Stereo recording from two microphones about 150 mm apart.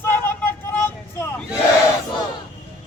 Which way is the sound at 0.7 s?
15° left (ahead or behind).